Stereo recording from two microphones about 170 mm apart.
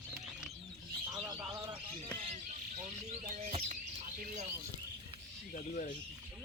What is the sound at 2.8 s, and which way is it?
Bird, 40° right (ahead or behind).